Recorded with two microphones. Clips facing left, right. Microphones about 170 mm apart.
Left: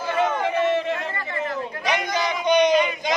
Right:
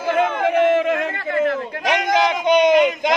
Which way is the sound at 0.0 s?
55° right (ahead or behind).